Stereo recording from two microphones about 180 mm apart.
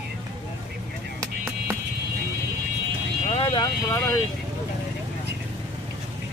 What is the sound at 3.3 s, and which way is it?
Vehicle, 25° left (ahead or behind).